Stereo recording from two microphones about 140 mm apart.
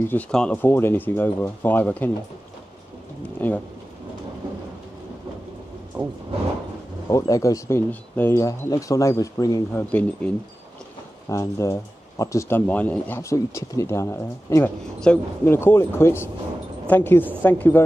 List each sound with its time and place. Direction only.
0.3 s speech: 5° left (ahead or behind)
3.3 s speech: 10° left (ahead or behind)
7.1 s a woman's voice: 25° left (ahead or behind)